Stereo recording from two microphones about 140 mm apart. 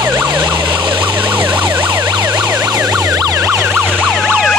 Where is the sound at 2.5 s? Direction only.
25° right (ahead or behind); by 4.3 s centre (ahead or behind).